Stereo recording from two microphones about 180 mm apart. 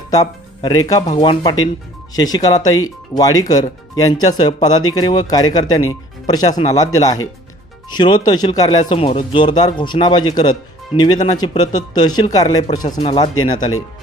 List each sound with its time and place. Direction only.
0.1 s speech: 20° left (ahead or behind)
8.9 s speech: 30° left (ahead or behind)